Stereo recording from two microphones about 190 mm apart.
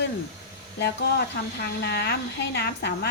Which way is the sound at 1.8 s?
60° left (ahead or behind).